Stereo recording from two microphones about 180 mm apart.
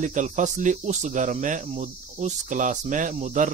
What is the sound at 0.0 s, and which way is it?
Speech, 45° right (ahead or behind).